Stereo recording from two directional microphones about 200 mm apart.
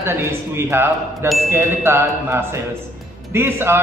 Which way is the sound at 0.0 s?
10° right (ahead or behind).